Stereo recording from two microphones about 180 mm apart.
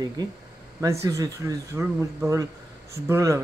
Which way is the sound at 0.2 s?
20° right (ahead or behind).